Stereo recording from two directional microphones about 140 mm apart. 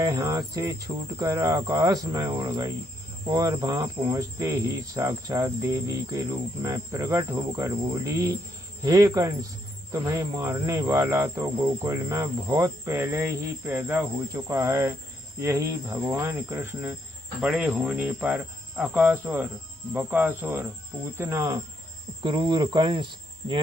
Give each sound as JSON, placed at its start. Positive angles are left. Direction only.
{"t": 0.0, "sound": "cricket", "side_deg": -25}
{"t": 11.8, "sound": "cricket", "side_deg": -25}
{"t": 17.4, "sound": "cricket", "side_deg": -5}
{"t": 22.2, "sound": "cricket", "side_deg": -30}